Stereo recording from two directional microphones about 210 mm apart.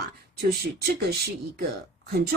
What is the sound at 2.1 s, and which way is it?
Speech, 45° right (ahead or behind).